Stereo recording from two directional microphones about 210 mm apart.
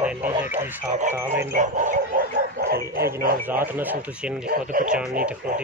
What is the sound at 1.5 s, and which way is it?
Bow-wow, 35° right (ahead or behind).